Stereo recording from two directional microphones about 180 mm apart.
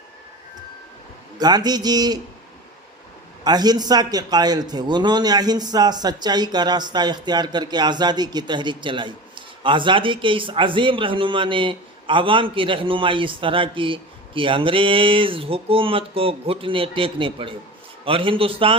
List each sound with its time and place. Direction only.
1.4 s a man's voice: 20° right (ahead or behind)
3.4 s a man's voice: 20° right (ahead or behind)